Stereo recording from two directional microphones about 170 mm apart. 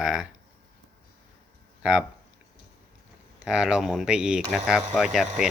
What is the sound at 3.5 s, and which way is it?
Speech, 5° right (ahead or behind).